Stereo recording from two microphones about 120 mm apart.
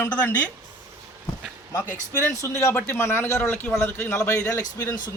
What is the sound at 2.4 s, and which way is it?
Speech, 25° left (ahead or behind).